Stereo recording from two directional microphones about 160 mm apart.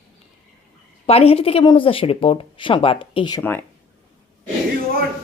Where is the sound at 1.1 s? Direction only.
40° left (ahead or behind).